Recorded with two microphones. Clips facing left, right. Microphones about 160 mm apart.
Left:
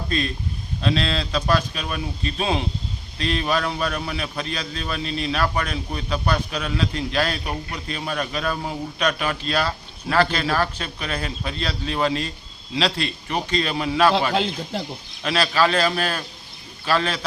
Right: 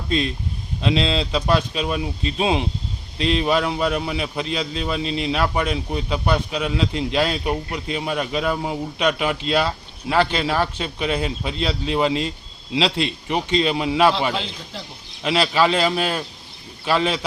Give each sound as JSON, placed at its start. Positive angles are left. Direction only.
{"t": 0.1, "sound": "a man's voice", "side_deg": -20}
{"t": 14.3, "sound": "speech", "side_deg": 55}
{"t": 15.2, "sound": "a man's voice", "side_deg": -20}